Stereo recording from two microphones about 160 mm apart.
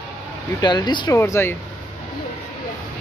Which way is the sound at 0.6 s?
25° left (ahead or behind).